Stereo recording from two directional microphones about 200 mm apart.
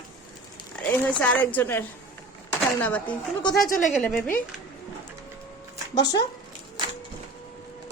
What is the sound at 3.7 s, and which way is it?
Speech, 40° left (ahead or behind).